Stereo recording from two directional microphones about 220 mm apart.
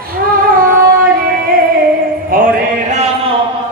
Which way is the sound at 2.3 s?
35° right (ahead or behind).